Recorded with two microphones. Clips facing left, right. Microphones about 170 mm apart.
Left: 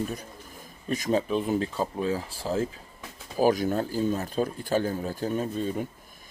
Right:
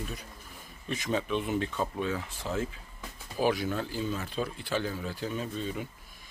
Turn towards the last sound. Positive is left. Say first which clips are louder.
# left 6 dB
turn(degrees=45)  # may be behind; listen again after turning